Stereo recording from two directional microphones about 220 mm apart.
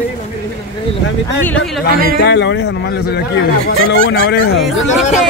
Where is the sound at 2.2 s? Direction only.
55° left (ahead or behind).